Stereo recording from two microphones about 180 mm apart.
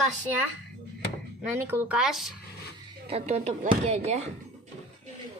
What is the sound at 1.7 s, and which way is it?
Speech, 5° right (ahead or behind).